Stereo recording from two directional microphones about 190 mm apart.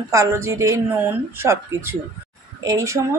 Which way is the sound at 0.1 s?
15° right (ahead or behind).